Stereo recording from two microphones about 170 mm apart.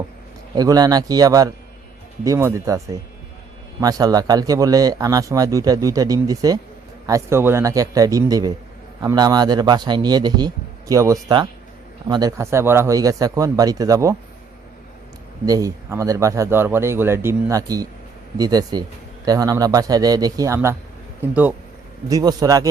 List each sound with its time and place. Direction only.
0.5 s speech: 20° right (ahead or behind)
15.4 s speech: 20° right (ahead or behind)
22.1 s speech: 20° right (ahead or behind)